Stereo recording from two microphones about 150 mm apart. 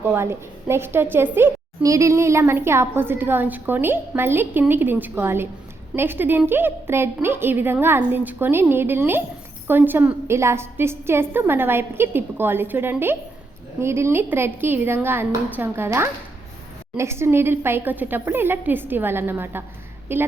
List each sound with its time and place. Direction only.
0.0 s a woman's voice: 15° right (ahead or behind)